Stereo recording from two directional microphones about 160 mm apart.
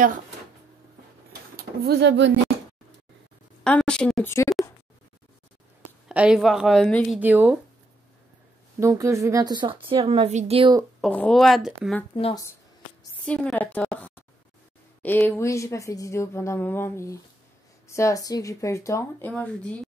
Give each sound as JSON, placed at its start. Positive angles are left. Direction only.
{"t": 1.6, "sound": "speech", "side_deg": -80}
{"t": 3.6, "sound": "a woman's voice", "side_deg": 5}
{"t": 4.3, "sound": "speech", "side_deg": 20}
{"t": 6.0, "sound": "a woman's voice", "side_deg": -5}
{"t": 7.2, "sound": "speech", "side_deg": -10}
{"t": 8.7, "sound": "a woman's voice", "side_deg": -20}
{"t": 11.0, "sound": "a woman's voice", "side_deg": 5}
{"t": 13.2, "sound": "speech", "side_deg": 5}